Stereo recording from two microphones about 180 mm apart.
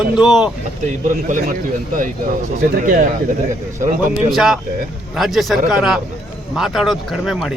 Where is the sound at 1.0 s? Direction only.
45° right (ahead or behind).